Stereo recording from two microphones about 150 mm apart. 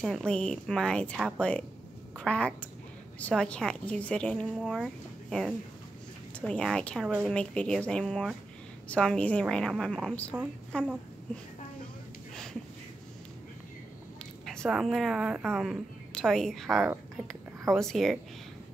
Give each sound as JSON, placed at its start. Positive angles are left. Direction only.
{"t": 0.0, "sound": "a woman's voice", "side_deg": 5}
{"t": 14.4, "sound": "a woman's voice", "side_deg": 0}